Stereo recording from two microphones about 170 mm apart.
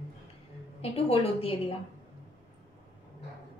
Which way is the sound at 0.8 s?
35° left (ahead or behind).